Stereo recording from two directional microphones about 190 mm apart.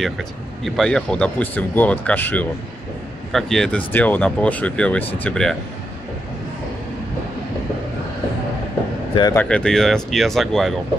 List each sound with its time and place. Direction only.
0.0 s speech: centre (ahead or behind)
9.1 s speech: 20° left (ahead or behind)
9.4 s speech: 5° left (ahead or behind)